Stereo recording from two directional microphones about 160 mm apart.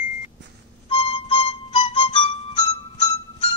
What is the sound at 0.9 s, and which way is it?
Music, 30° left (ahead or behind).